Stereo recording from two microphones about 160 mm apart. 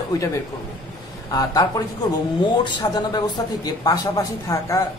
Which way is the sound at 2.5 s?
25° left (ahead or behind).